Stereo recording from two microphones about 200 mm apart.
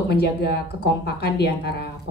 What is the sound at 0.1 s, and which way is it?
Speech, 55° left (ahead or behind).